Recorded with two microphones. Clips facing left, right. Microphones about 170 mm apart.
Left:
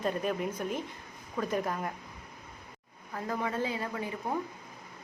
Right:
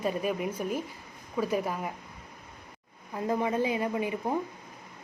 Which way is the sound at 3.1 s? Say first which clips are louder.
Right 5 dB; 20° right (ahead or behind).